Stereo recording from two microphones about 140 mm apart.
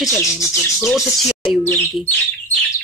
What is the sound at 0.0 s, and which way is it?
Speech, centre (ahead or behind).